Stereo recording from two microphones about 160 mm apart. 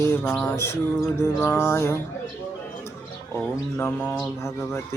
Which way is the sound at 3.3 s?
15° left (ahead or behind).